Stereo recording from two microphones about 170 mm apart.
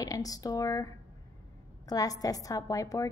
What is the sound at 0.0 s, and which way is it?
Speech, 20° left (ahead or behind).